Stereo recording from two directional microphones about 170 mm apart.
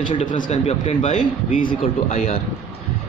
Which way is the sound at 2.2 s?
40° left (ahead or behind).